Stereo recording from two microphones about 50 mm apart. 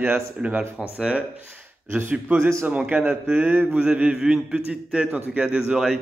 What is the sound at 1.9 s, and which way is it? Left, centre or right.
A man's voice, right.